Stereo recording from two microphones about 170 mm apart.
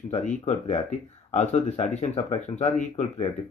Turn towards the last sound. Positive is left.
turn(degrees=40)  # may be behind; listen again after turning